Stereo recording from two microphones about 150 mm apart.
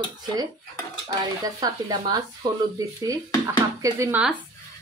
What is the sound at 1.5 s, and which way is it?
Speech, 25° right (ahead or behind).